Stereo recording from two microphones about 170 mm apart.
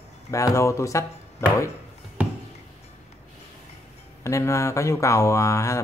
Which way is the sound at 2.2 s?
10° right (ahead or behind).